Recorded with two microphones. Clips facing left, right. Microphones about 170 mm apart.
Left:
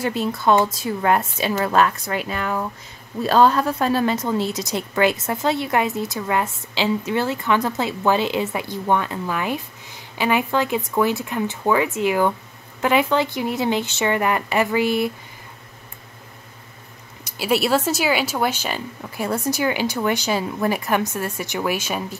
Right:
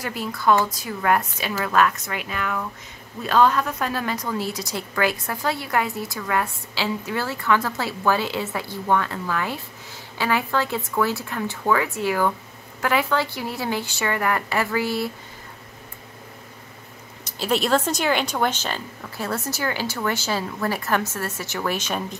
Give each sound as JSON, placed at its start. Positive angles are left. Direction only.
{"t": 0.0, "sound": "a woman's voice", "side_deg": 25}
{"t": 17.2, "sound": "speech", "side_deg": 10}